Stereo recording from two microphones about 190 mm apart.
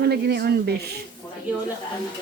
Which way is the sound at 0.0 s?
55° right (ahead or behind).